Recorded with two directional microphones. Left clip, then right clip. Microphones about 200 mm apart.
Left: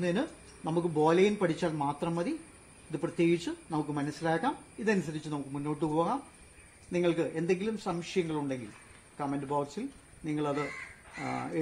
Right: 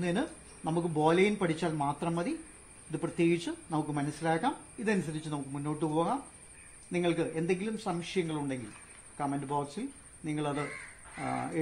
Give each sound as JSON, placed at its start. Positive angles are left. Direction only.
{"t": 0.0, "sound": "speech", "side_deg": -15}